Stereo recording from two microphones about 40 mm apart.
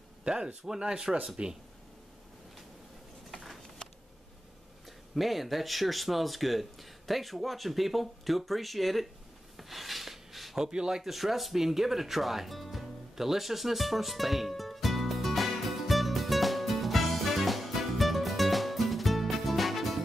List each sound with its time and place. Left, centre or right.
0.2 s speech: centre
3.3 s a sound: centre
4.8 s speech: centre
9.6 s a sound: centre
10.6 s speech: centre
11.0 s music: centre